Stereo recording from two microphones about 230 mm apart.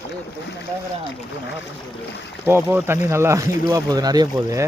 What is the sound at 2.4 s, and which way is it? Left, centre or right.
Speech, centre.